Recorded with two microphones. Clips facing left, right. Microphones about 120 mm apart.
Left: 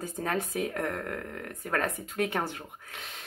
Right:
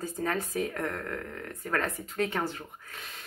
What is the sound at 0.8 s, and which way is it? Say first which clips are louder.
Speech: left 1 dB; 35° left (ahead or behind).